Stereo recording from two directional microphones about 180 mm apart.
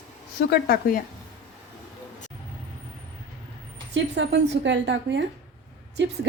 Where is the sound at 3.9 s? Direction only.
80° right.